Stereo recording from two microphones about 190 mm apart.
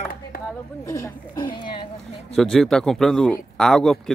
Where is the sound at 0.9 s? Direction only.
15° left (ahead or behind).